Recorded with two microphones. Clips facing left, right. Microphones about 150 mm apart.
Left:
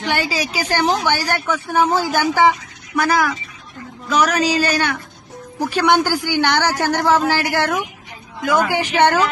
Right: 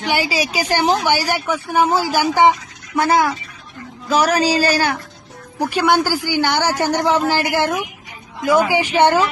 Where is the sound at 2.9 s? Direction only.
25° right (ahead or behind).